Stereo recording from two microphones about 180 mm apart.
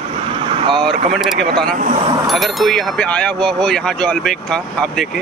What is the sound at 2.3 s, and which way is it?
Speech, centre (ahead or behind).